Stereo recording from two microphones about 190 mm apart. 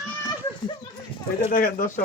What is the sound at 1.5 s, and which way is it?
Speech, 45° left (ahead or behind).